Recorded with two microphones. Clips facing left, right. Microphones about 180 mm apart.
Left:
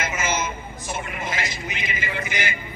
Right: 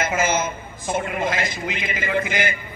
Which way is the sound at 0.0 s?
50° right (ahead or behind).